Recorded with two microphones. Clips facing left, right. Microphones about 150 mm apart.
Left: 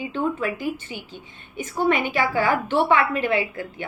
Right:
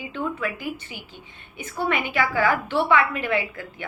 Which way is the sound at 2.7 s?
40° left (ahead or behind).